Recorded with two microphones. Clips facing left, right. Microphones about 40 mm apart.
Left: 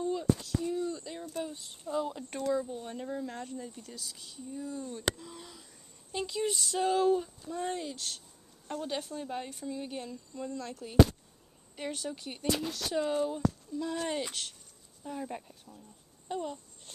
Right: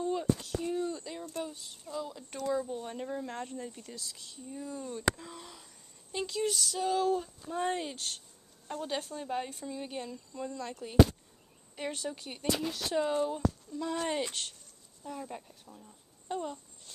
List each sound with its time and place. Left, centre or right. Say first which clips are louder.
0.1 s a sound: left 1 dB; right
1.0 s speech: left 1 dB; centre
1.5 s speech: left 5 dB; left
2.5 s speech: right 2 dB; centre
4.0 s speech: even; centre
4.5 s speech: left 1 dB; centre
5.4 s a sound: even; centre
6.1 s speech: even; centre
7.5 s speech: right 2 dB; right
8.6 s speech: even; centre
15.0 s a child's voice: left 2 dB; centre